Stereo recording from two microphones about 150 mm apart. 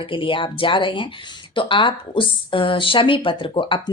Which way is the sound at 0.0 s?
35° left (ahead or behind).